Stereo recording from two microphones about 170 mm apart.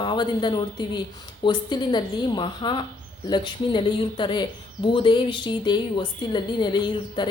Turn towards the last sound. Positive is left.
turn(degrees=25)  # may be behind; listen again after turning